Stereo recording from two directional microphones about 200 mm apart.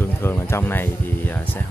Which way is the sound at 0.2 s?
10° left (ahead or behind).